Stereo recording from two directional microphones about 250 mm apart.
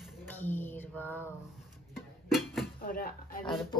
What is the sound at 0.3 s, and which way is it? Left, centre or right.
Mantra, centre.